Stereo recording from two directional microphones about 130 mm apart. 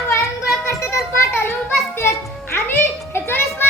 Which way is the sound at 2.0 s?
20° left (ahead or behind).